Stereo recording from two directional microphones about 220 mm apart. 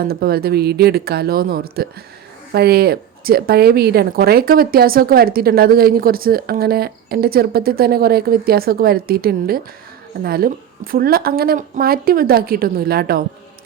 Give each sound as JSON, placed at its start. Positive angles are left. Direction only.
{"t": 0.0, "sound": "a woman's voice", "side_deg": -45}